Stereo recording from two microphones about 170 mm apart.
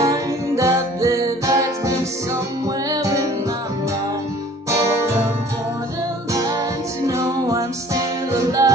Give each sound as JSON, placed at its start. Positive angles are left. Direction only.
{"t": 0.0, "sound": "music", "side_deg": -20}
{"t": 7.1, "sound": "music", "side_deg": -20}